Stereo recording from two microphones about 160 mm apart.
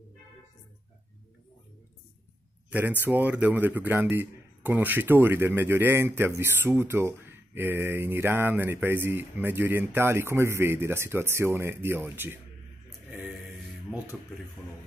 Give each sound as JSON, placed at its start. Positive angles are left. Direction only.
{"t": 2.7, "sound": "speech", "side_deg": -10}